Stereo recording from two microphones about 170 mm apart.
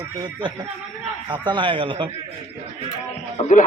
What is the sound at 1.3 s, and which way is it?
Speech, 30° right (ahead or behind).